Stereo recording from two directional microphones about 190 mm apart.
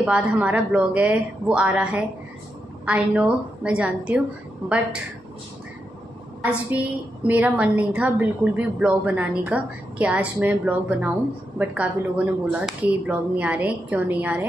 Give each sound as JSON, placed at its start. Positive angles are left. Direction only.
{"t": 0.0, "sound": "a woman's voice", "side_deg": -5}
{"t": 6.4, "sound": "a woman's voice", "side_deg": -5}